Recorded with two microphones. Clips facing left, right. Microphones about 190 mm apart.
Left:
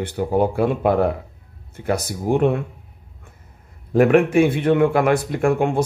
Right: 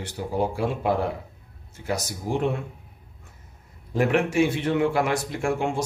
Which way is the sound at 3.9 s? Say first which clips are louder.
Left 8 dB; 55° left (ahead or behind).